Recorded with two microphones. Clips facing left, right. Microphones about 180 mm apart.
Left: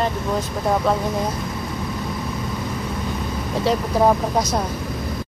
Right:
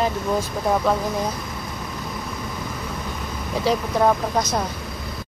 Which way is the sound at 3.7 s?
5° left (ahead or behind).